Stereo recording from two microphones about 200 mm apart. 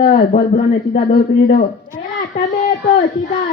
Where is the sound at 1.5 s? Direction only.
40° left (ahead or behind).